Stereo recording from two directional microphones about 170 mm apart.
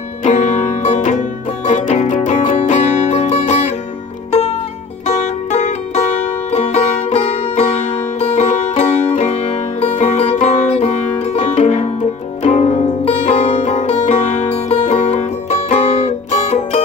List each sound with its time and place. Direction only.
0.2 s music: 45° left (ahead or behind)
5.0 s music: 45° left (ahead or behind)